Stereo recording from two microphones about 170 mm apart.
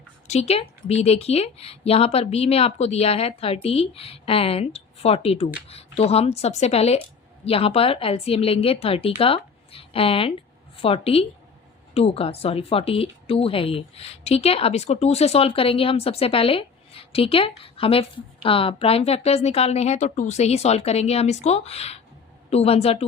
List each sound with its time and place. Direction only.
0.3 s a woman's voice: 40° left (ahead or behind)